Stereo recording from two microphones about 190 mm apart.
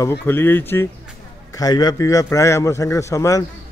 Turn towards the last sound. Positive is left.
turn(degrees=15)  # may be behind; listen again after turning